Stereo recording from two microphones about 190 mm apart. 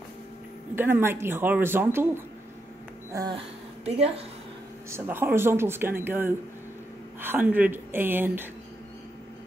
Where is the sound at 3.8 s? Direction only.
30° right (ahead or behind).